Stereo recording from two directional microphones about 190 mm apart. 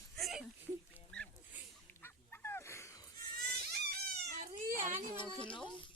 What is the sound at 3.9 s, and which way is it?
Cat, 50° right (ahead or behind).